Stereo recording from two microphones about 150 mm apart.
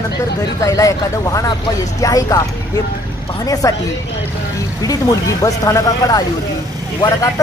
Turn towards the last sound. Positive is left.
turn(degrees=25)  # may be behind; listen again after turning